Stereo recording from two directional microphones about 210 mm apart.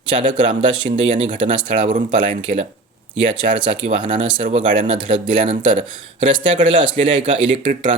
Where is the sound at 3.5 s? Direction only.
25° right (ahead or behind).